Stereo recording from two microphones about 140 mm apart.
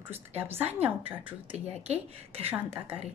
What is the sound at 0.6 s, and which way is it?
Speech, 45° right (ahead or behind).